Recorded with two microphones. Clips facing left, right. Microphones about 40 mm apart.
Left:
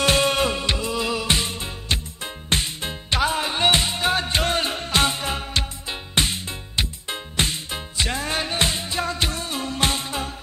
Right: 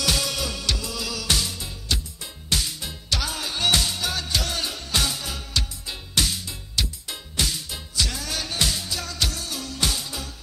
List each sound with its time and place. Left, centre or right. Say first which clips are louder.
0.0 s music: left 7 dB; left